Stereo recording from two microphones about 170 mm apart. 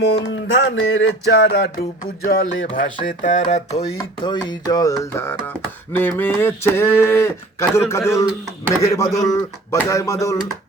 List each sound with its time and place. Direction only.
0.0 s music: 90° left
2.2 s a sound: 55° left (ahead or behind)
3.9 s speech: 25° left (ahead or behind)